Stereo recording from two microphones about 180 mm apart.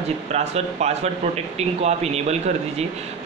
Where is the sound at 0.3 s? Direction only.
40° right (ahead or behind).